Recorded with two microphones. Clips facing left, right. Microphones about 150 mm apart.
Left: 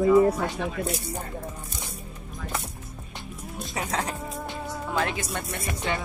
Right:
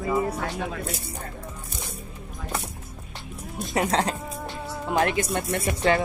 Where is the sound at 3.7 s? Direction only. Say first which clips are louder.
Right 7 dB; 70° right (ahead or behind).